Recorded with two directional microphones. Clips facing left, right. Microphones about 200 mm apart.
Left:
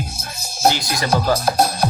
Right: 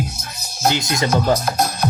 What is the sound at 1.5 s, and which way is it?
Music, 30° left (ahead or behind).